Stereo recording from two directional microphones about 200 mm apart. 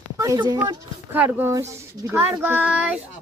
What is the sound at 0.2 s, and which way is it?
Speech, 20° right (ahead or behind).